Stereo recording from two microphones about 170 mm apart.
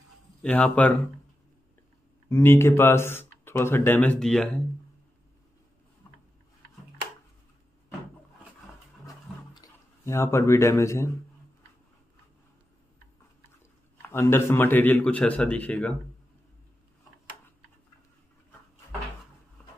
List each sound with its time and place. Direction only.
0.4 s speech: 5° left (ahead or behind)
2.2 s speech: 15° left (ahead or behind)
9.0 s a sound: 20° left (ahead or behind)
14.0 s speech: 15° left (ahead or behind)